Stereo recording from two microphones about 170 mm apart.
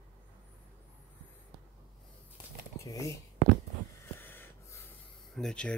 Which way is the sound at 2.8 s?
20° left (ahead or behind).